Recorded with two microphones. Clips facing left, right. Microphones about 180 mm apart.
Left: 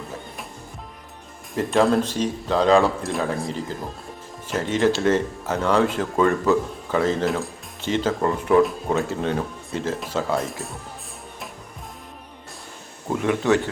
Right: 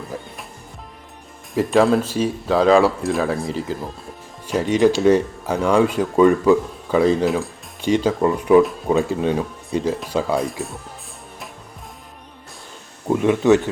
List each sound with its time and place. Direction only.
0.1 s music: 15° right (ahead or behind)
1.7 s speech: centre (ahead or behind)
3.4 s speech: 10° right (ahead or behind)
7.3 s speech: centre (ahead or behind)
7.8 s speech: 15° right (ahead or behind)
13.1 s speech: 20° right (ahead or behind)